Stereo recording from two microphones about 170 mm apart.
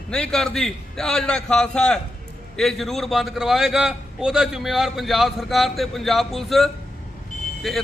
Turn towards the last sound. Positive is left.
turn(degrees=0)  # may be behind; listen again after turning